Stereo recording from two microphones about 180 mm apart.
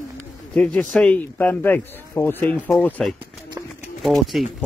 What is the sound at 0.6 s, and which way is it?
Speech, 5° left (ahead or behind).